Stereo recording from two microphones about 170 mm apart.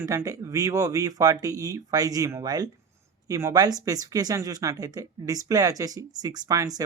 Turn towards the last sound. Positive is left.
turn(degrees=-20)  # may be behind; listen again after turning